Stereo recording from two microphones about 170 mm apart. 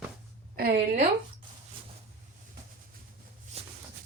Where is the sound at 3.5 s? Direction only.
35° right (ahead or behind).